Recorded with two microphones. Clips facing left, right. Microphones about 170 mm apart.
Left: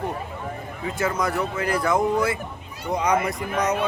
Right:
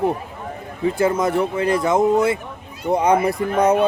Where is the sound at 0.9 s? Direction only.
25° right (ahead or behind).